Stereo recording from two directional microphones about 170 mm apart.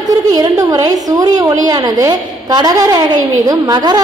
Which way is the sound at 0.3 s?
20° right (ahead or behind).